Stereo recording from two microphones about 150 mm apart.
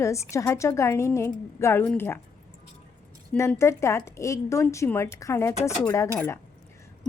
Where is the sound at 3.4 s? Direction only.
20° left (ahead or behind).